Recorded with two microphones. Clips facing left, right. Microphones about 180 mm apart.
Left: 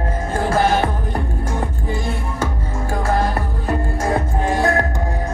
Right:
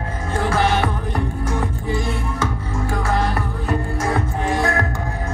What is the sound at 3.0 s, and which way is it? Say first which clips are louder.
Music: left 3 dB; 40° left (ahead or behind).